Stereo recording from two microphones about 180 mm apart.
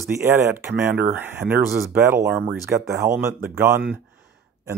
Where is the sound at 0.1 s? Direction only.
15° right (ahead or behind).